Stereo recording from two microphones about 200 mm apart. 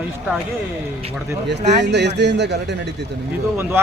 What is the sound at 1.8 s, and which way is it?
Speech, 60° right (ahead or behind).